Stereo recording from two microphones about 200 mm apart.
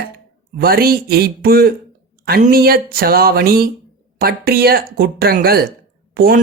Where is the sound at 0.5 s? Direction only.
50° right (ahead or behind).